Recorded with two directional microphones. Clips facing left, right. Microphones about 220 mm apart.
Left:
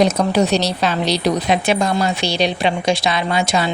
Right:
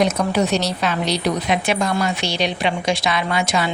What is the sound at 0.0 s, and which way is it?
A woman's voice, 35° left (ahead or behind).